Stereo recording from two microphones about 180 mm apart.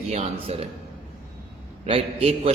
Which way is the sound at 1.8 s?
30° right (ahead or behind).